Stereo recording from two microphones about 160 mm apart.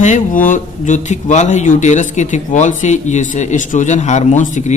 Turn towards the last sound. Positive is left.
turn(degrees=50)  # may be behind; listen again after turning